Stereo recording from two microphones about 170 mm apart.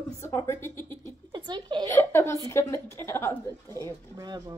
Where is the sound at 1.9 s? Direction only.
15° left (ahead or behind).